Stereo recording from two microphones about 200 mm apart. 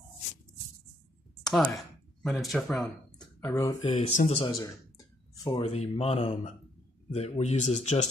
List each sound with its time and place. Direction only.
1.4 s a sound: 5° left (ahead or behind)
2.5 s speech: centre (ahead or behind)
3.8 s speech: 35° left (ahead or behind); by 5.6 s 15° left (ahead or behind)
5.6 s speech: 30° left (ahead or behind)